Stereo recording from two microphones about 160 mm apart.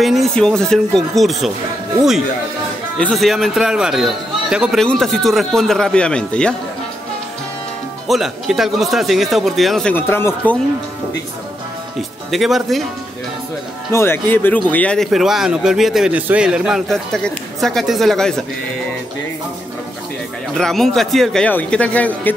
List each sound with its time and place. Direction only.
0.0 s speech: centre (ahead or behind)
8.1 s speech: centre (ahead or behind)
12.3 s speech: centre (ahead or behind)
13.9 s speech: 15° left (ahead or behind)
20.5 s speech: centre (ahead or behind)